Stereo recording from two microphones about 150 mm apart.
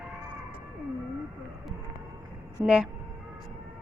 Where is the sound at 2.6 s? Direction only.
5° right (ahead or behind).